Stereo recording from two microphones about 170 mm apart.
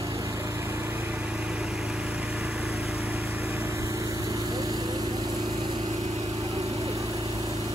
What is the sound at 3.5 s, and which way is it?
Lawn mower, 15° right (ahead or behind).